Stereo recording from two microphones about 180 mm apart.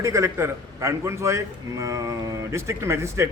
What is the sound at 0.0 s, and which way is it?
A man's voice, 15° right (ahead or behind).